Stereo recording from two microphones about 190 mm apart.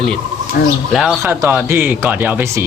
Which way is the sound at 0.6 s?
60° left (ahead or behind).